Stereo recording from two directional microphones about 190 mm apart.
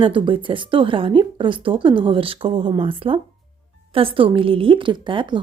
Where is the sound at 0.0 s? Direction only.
25° right (ahead or behind).